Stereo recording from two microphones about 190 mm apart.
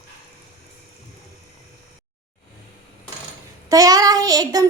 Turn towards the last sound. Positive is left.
turn(degrees=-20)  # may be behind; listen again after turning